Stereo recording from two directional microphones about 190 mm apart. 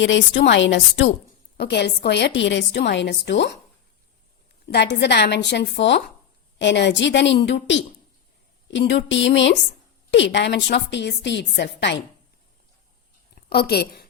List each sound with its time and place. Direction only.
0.0 s a woman's voice: 70° left (ahead or behind)
1.5 s a woman's voice: 60° left (ahead or behind)
4.7 s a woman's voice: 65° left (ahead or behind)
13.3 s a woman's voice: 55° left (ahead or behind)